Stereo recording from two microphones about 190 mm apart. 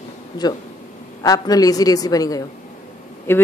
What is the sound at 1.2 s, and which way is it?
A woman's voice, 20° left (ahead or behind).